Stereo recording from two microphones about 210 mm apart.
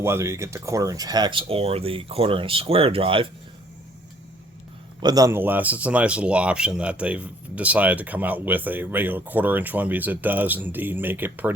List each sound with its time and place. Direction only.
0.0 s speech: 10° right (ahead or behind)
5.0 s speech: 15° right (ahead or behind)